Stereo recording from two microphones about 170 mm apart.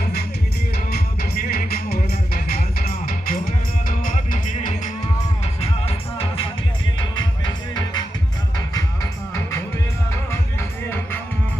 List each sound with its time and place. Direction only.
0.9 s music: 65° left (ahead or behind); by 4.9 s 50° left (ahead or behind)
5.5 s music: 35° left (ahead or behind)
10.6 s music: 15° left (ahead or behind)